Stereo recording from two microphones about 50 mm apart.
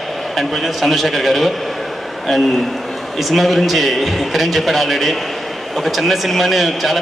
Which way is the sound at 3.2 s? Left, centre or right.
Centre.